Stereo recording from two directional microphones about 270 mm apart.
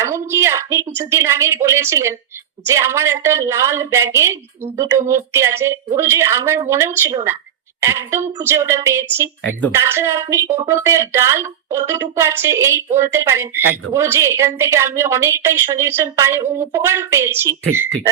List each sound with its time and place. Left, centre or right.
0.0 s a woman's voice: centre
13.6 s speech: right
13.9 s a woman's voice: centre